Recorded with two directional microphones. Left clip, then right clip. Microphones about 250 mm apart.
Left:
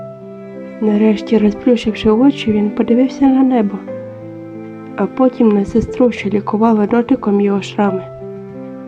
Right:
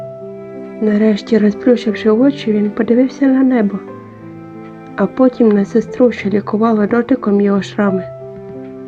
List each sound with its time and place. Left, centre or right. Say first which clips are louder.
0.9 s speech: even; centre
4.9 s speech: right 1 dB; centre